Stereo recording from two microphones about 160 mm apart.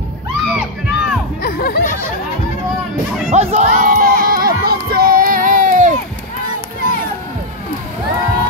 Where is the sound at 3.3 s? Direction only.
45° right (ahead or behind).